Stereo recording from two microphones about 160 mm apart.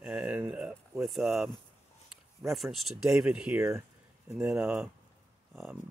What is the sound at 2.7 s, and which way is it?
Speech, centre (ahead or behind).